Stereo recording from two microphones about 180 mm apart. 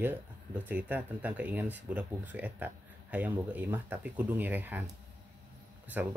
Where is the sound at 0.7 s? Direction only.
10° right (ahead or behind).